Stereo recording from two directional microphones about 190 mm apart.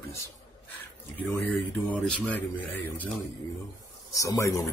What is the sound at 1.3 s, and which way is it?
Speech, 10° left (ahead or behind).